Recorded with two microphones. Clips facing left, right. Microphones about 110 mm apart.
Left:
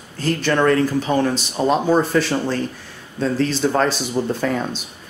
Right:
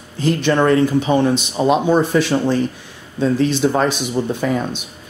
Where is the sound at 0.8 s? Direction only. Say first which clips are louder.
Right 3 dB; centre (ahead or behind).